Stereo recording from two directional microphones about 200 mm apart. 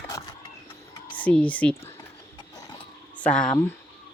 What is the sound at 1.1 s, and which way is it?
Speech, 5° left (ahead or behind).